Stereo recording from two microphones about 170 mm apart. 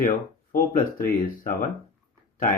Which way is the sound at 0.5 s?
55° left (ahead or behind).